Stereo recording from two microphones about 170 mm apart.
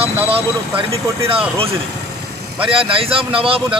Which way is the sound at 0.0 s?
35° right (ahead or behind).